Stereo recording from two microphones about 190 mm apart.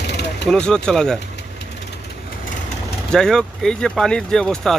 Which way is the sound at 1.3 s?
65° left (ahead or behind).